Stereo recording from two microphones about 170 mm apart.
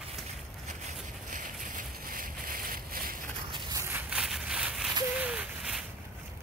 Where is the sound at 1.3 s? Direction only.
50° right (ahead or behind).